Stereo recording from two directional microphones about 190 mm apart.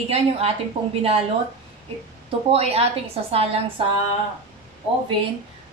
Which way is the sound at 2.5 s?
30° right (ahead or behind).